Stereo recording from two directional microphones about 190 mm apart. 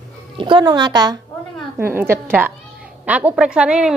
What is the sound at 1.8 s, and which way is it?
A woman's voice, 10° right (ahead or behind).